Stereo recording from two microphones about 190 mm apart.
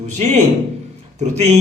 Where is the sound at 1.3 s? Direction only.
35° right (ahead or behind).